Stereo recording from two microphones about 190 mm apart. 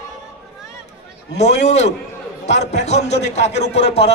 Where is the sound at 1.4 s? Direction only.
35° left (ahead or behind).